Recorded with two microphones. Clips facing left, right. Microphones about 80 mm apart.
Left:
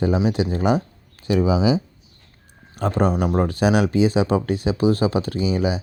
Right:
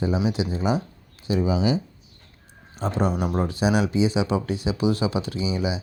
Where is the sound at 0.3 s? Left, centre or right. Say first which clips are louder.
Left 4 dB; left.